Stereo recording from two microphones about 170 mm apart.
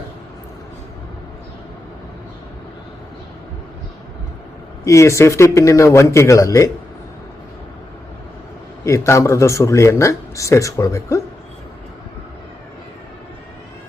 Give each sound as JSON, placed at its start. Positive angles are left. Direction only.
{"t": 4.9, "sound": "speech", "side_deg": 15}
{"t": 8.8, "sound": "speech", "side_deg": 15}